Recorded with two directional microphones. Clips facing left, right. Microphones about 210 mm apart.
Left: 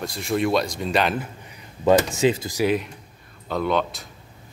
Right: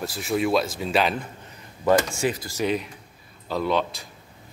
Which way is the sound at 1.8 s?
20° left (ahead or behind).